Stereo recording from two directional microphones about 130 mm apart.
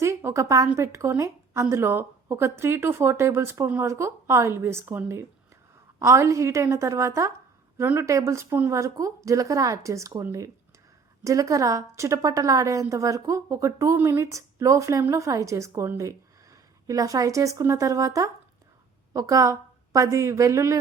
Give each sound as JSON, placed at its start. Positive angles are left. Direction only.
{"t": 0.0, "sound": "a woman's voice", "side_deg": -20}